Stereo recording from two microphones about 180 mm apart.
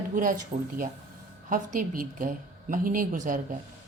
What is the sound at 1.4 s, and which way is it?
Speech, 45° right (ahead or behind).